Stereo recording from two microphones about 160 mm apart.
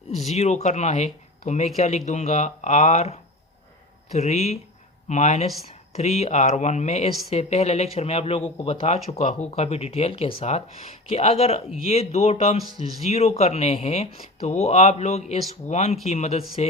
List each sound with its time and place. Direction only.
0.2 s speech: 45° left (ahead or behind)